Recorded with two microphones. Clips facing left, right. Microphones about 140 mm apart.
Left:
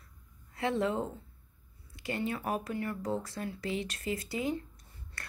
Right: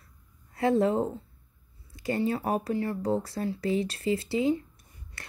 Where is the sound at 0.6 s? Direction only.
35° right (ahead or behind).